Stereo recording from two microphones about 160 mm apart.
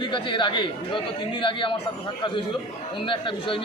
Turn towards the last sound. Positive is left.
turn(degrees=30)  # may be behind; listen again after turning